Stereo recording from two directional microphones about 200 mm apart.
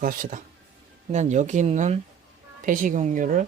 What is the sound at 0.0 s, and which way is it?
Speech, 45° right (ahead or behind).